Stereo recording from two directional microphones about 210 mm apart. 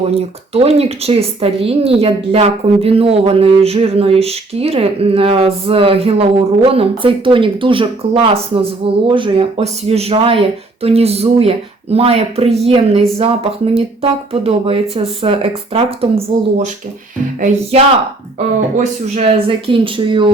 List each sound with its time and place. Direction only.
0.1 s speech: 30° right (ahead or behind)